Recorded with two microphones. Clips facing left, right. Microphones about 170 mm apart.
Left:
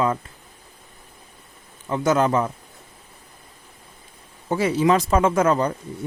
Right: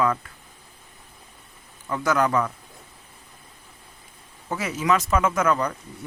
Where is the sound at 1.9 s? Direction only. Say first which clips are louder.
Left 3 dB; 25° left (ahead or behind).